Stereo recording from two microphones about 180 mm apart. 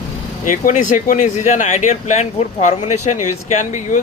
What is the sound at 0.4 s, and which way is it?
Speech, 45° left (ahead or behind).